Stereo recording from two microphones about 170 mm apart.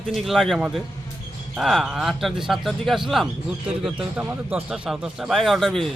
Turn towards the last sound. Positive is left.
turn(degrees=0)  # may be behind; listen again after turning